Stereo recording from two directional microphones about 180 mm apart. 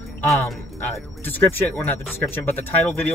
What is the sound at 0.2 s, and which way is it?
Speech, 10° left (ahead or behind).